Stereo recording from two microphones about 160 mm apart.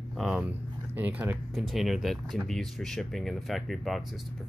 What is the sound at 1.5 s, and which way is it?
Speech, centre (ahead or behind).